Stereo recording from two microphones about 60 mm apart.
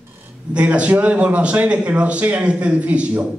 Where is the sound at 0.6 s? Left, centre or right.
Right.